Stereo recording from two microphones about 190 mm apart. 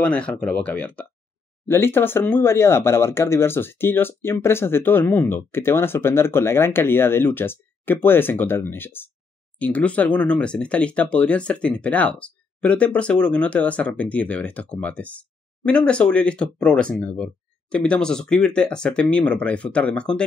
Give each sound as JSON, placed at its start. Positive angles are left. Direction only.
{"t": 0.0, "sound": "speech", "side_deg": 5}